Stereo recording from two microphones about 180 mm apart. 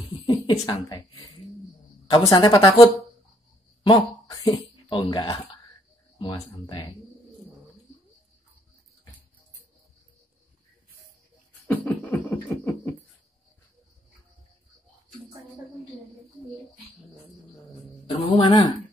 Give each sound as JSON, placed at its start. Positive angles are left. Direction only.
{"t": 0.3, "sound": "a woman's voice", "side_deg": 25}
{"t": 11.6, "sound": "beatboxing", "side_deg": 10}
{"t": 18.3, "sound": "a woman's voice", "side_deg": 25}